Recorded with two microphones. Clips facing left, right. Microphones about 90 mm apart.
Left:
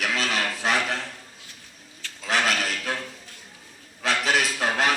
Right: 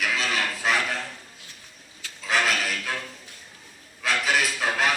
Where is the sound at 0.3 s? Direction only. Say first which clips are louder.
Even; 35° left (ahead or behind).